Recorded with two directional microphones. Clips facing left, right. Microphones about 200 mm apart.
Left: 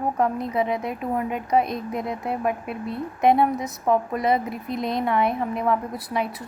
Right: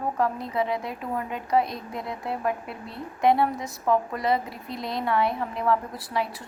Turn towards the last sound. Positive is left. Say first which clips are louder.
# left 3 dB
turn(degrees=20)  # may be behind; listen again after turning